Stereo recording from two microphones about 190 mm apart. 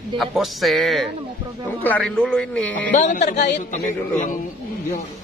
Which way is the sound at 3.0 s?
40° left (ahead or behind).